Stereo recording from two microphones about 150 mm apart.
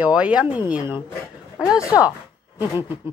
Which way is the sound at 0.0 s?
10° right (ahead or behind).